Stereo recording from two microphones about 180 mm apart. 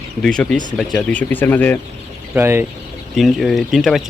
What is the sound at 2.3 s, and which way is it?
Speech, 10° right (ahead or behind).